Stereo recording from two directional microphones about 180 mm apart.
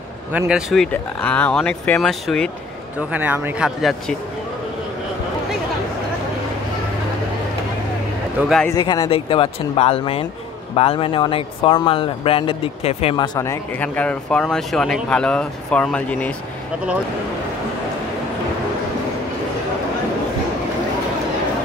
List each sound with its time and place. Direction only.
0.3 s speech: 5° right (ahead or behind)
3.1 s speech: 10° right (ahead or behind)
8.4 s speech: centre (ahead or behind)
8.6 s a man's voice: 20° left (ahead or behind)
9.1 s speech: 30° left (ahead or behind); by 16.3 s 5° left (ahead or behind)